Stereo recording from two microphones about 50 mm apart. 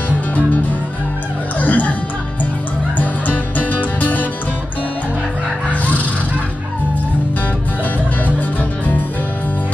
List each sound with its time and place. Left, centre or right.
1.6 s music: left
3.0 s music: left
5.7 s music: left